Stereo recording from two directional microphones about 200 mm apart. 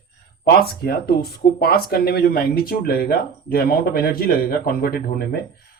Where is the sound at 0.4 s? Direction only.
50° left (ahead or behind).